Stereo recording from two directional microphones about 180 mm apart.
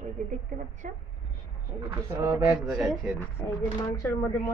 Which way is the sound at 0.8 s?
45° right (ahead or behind).